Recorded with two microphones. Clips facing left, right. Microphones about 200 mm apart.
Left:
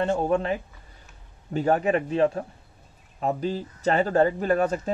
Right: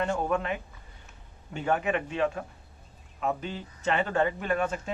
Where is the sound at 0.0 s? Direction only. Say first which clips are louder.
Left 5 dB; 30° left (ahead or behind).